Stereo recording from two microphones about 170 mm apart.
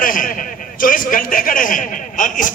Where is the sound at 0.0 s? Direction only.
55° left (ahead or behind).